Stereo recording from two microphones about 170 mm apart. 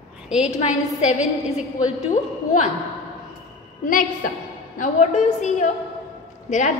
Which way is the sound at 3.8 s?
50° left (ahead or behind).